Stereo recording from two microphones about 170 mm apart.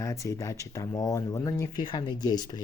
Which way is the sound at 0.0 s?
15° left (ahead or behind).